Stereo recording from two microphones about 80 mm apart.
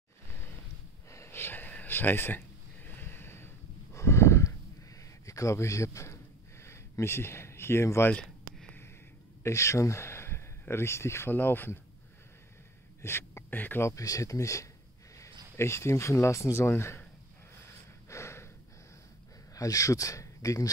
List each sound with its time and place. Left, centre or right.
1.1 s a sound: left
5.2 s speech: left
6.6 s a sound: left
8.1 s a sound: centre
9.4 s speech: left
13.0 s speech: left
13.8 s a man's voice: left
18.0 s breathing: left
19.5 s speech: left